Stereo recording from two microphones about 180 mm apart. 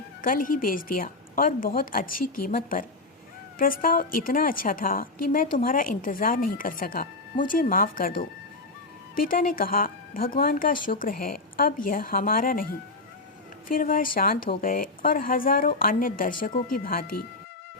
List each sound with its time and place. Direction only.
0.2 s a woman's voice: 50° left (ahead or behind)
13.7 s a woman's voice: 50° left (ahead or behind)